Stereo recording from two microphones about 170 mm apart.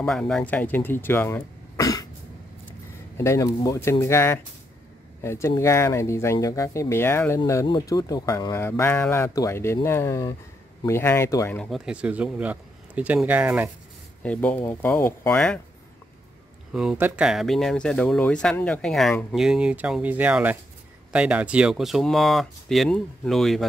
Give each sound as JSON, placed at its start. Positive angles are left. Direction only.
{"t": 0.0, "sound": "speech", "side_deg": 5}
{"t": 3.2, "sound": "speech", "side_deg": 20}
{"t": 11.5, "sound": "speech", "side_deg": 0}
{"t": 14.2, "sound": "speech", "side_deg": 10}
{"t": 16.7, "sound": "speech", "side_deg": -5}